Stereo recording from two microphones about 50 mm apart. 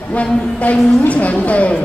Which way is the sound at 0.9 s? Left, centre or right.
Left.